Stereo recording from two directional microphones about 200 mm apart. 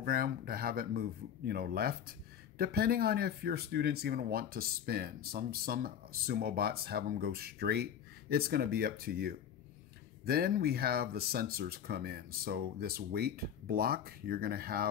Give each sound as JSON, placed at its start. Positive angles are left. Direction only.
{"t": 0.0, "sound": "speech", "side_deg": -45}